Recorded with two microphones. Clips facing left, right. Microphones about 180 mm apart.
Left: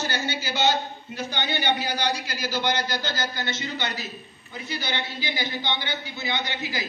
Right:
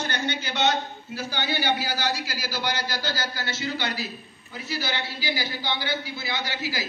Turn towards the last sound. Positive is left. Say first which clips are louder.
# even
turn(degrees=-5)  # may be behind; listen again after turning